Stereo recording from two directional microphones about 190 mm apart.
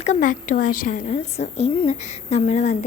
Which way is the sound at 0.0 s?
40° left (ahead or behind).